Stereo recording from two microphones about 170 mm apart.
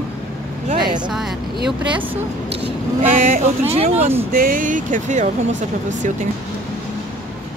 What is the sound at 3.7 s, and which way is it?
Speech, 35° right (ahead or behind).